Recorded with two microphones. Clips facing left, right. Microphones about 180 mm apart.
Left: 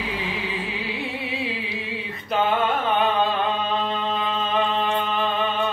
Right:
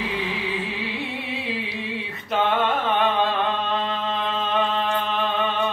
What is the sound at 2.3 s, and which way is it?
Music, centre (ahead or behind).